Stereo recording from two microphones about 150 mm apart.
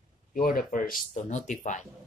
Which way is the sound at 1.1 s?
50° left (ahead or behind).